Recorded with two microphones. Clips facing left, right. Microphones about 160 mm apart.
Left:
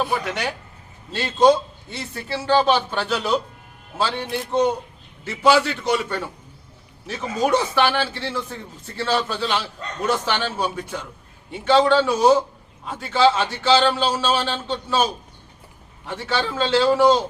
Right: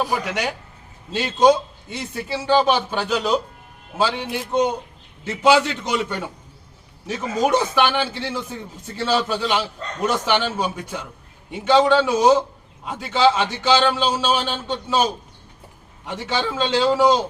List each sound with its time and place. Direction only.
0.0 s a man's voice: 15° right (ahead or behind)
16.0 s a man's voice: 15° right (ahead or behind)